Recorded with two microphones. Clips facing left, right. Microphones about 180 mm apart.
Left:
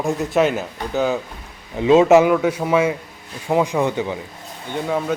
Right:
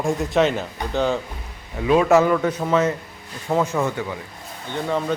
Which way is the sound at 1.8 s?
25° left (ahead or behind).